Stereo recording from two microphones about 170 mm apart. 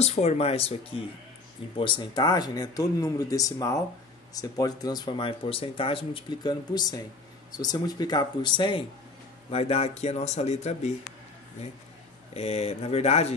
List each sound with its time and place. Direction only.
0.0 s speech: 40° left (ahead or behind)
12.4 s speech: 40° left (ahead or behind)